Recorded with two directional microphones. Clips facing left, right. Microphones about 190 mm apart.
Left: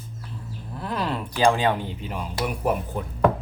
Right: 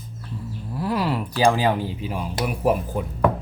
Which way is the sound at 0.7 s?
10° right (ahead or behind).